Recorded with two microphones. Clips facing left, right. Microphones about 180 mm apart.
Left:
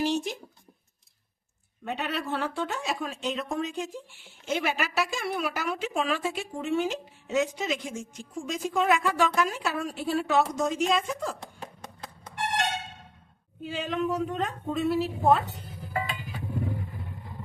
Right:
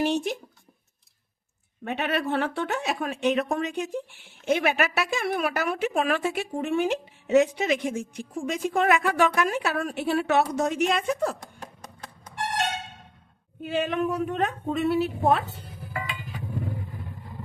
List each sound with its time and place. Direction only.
0.0 s a sound: 60° right (ahead or behind)
1.8 s speech: 60° right (ahead or behind)
13.6 s speech: 60° right (ahead or behind)